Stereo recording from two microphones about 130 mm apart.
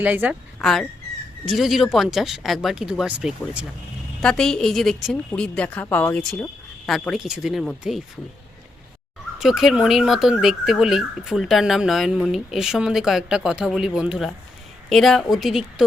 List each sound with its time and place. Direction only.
0.0 s a woman's voice: 10° right (ahead or behind)
0.6 s speech: 5° left (ahead or behind)
4.2 s speech: 5° left (ahead or behind)
6.8 s speech: 5° left (ahead or behind)
9.4 s speech: 5° right (ahead or behind)